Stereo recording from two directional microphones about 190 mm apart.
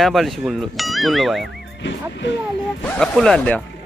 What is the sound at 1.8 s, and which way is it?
Speech, 70° left (ahead or behind).